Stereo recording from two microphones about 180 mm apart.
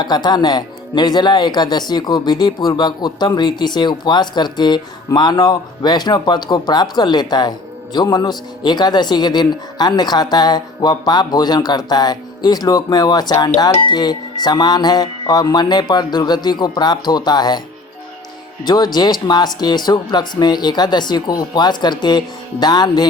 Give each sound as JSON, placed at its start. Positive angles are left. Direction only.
{"t": 0.0, "sound": "speech", "side_deg": 25}
{"t": 18.6, "sound": "speech", "side_deg": 25}